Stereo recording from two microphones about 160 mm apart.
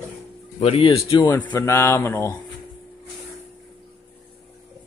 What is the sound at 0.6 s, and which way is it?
Speech, 35° left (ahead or behind).